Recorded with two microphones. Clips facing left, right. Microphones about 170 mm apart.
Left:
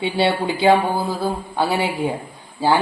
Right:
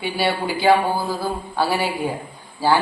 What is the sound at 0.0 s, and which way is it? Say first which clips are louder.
A woman's voice: left 3 dB; 25° left (ahead or behind).